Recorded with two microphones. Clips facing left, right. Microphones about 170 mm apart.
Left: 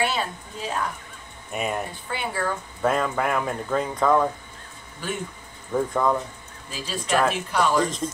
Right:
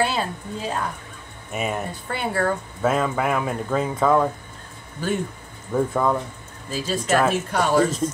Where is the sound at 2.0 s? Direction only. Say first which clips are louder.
Right 6 dB; 45° right (ahead or behind).